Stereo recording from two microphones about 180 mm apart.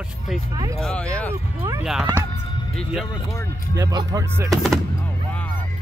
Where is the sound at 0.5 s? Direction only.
20° right (ahead or behind).